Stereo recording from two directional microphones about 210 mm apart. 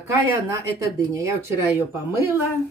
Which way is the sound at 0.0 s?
15° right (ahead or behind).